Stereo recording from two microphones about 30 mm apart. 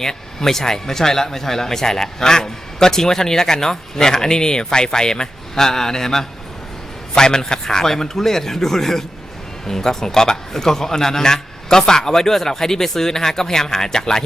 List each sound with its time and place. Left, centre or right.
0.0 s speech: centre